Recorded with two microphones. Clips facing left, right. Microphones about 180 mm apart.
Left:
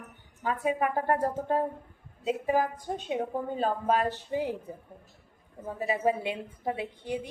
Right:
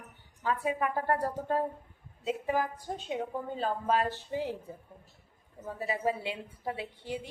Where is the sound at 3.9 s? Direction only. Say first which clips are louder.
Left 2 dB; 20° left (ahead or behind).